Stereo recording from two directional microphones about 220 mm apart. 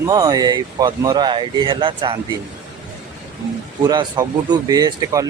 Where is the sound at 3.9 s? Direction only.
20° right (ahead or behind).